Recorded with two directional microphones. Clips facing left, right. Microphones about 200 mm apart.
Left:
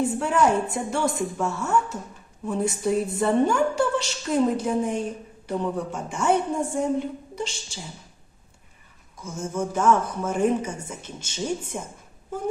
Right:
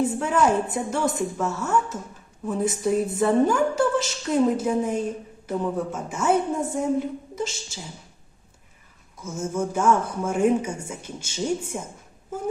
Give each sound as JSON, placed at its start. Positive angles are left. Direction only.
{"t": 0.0, "sound": "a woman's voice", "side_deg": 0}
{"t": 9.2, "sound": "speech", "side_deg": -10}